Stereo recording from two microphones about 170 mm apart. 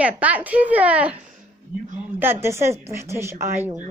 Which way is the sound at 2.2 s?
15° right (ahead or behind).